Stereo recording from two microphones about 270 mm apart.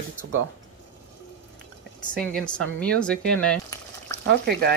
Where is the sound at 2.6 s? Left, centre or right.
Centre.